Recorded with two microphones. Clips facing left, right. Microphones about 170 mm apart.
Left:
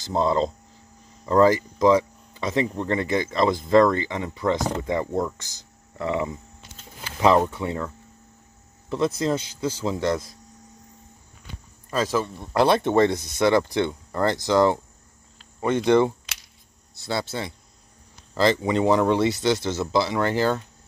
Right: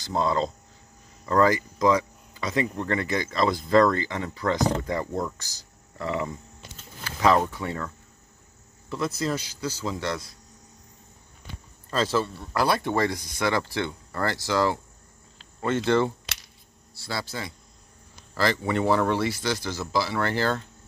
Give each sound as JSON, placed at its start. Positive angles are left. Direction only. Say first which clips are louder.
{"t": 0.0, "sound": "speech", "louder": "left 3 dB", "side_deg": 25}
{"t": 1.2, "sound": "speech", "louder": "left 4 dB", "side_deg": 10}
{"t": 1.8, "sound": "speech", "louder": "left 4 dB", "side_deg": 25}
{"t": 4.6, "sound": "speech", "louder": "right 2 dB", "side_deg": 0}
{"t": 5.4, "sound": "speech", "louder": "left 1 dB", "side_deg": 20}
{"t": 11.9, "sound": "speech", "louder": "left 1 dB", "side_deg": 10}
{"t": 12.5, "sound": "speech", "louder": "left 6 dB", "side_deg": 25}